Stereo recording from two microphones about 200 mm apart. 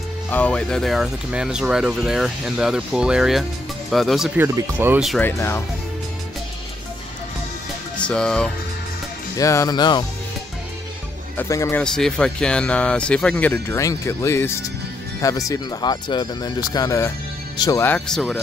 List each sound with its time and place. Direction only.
0.3 s speech: 5° left (ahead or behind)
4.4 s speech: 10° right (ahead or behind)
5.2 s speech: 10° left (ahead or behind)
8.0 s speech: 5° left (ahead or behind)
9.4 s speech: 15° left (ahead or behind)
11.3 s speech: 15° left (ahead or behind)
11.8 s speech: 5° left (ahead or behind)